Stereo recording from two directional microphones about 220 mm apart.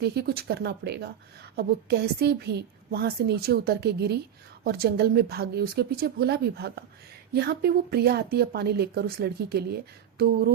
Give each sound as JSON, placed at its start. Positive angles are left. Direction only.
{"t": 0.0, "sound": "a woman's voice", "side_deg": -45}